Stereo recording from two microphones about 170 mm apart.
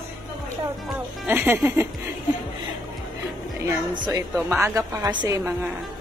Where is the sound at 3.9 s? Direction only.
25° right (ahead or behind).